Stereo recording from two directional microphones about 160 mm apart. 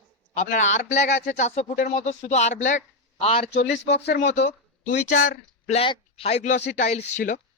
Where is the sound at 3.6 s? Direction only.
90° left.